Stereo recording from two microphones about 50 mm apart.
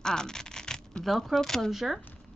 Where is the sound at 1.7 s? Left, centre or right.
Centre.